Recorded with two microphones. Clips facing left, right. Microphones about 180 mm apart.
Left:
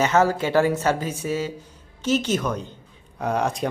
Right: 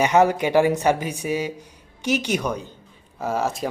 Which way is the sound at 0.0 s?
15° right (ahead or behind).